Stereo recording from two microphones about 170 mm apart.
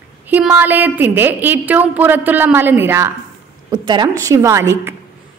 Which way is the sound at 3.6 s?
25° right (ahead or behind).